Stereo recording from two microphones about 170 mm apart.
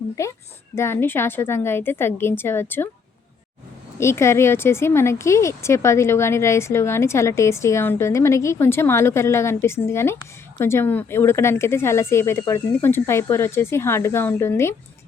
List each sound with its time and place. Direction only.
0.2 s speech: 15° left (ahead or behind)
4.0 s speech: 15° left (ahead or behind)